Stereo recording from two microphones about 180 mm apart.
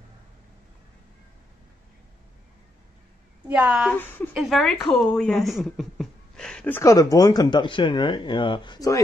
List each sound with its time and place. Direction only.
3.4 s a woman's voice: 5° right (ahead or behind)
3.9 s speech: 10° left (ahead or behind)
4.3 s speech: 5° right (ahead or behind); by 9.0 s 20° left (ahead or behind)